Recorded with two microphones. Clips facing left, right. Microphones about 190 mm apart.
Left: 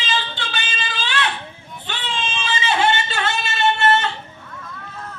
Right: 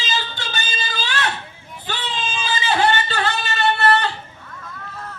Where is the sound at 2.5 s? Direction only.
35° right (ahead or behind).